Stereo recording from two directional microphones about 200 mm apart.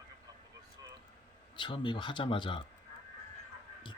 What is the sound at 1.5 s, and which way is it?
Speech, 25° left (ahead or behind).